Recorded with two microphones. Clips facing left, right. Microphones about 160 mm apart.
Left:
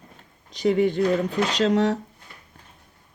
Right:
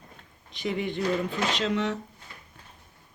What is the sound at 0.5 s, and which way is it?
Speech, 45° left (ahead or behind).